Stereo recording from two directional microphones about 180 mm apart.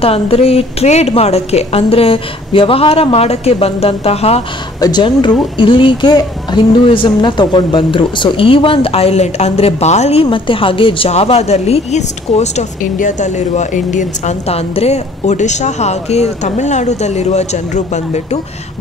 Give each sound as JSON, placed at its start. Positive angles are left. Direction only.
{"t": 0.0, "sound": "speech", "side_deg": 30}
{"t": 4.7, "sound": "speech", "side_deg": 20}